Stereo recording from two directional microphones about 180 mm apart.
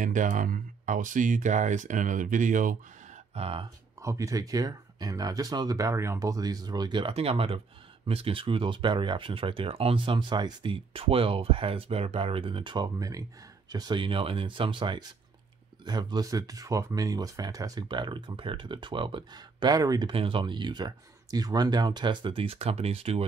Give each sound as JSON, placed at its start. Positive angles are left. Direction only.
{"t": 0.0, "sound": "speech", "side_deg": -45}
{"t": 3.3, "sound": "speech", "side_deg": -35}
{"t": 4.0, "sound": "speech", "side_deg": -15}